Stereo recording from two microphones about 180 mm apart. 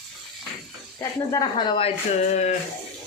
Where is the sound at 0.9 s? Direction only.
20° left (ahead or behind); by 2.6 s 40° left (ahead or behind).